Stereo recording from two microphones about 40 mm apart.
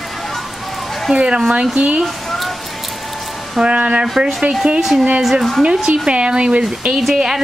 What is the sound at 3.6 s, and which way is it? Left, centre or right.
Speech, right.